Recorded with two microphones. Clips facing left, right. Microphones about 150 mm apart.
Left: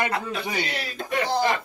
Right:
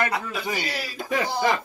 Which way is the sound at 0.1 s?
5° right (ahead or behind).